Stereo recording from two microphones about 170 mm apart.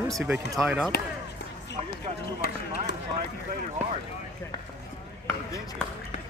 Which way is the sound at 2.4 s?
65° left (ahead or behind).